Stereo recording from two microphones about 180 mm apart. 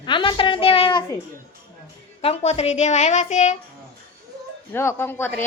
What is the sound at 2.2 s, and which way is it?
A woman's voice, 35° left (ahead or behind).